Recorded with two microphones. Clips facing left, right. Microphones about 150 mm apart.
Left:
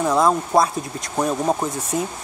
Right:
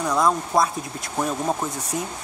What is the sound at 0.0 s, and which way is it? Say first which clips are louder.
Speech: left 3 dB; 25° left (ahead or behind).